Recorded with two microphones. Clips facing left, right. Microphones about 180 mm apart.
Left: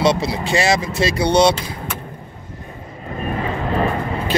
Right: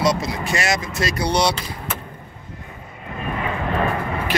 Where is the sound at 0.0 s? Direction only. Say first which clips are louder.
Left 3 dB; 30° left (ahead or behind).